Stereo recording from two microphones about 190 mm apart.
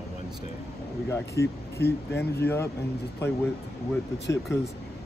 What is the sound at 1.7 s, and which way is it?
Speech, 60° left (ahead or behind).